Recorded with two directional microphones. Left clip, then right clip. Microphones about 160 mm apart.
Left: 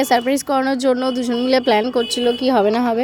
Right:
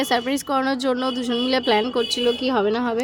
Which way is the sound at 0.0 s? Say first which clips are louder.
Left 5 dB; 20° left (ahead or behind).